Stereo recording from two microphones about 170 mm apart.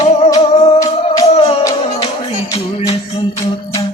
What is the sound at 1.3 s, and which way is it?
Music, 35° left (ahead or behind).